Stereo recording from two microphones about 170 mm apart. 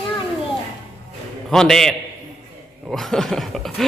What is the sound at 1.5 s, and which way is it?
A man's voice, 5° left (ahead or behind).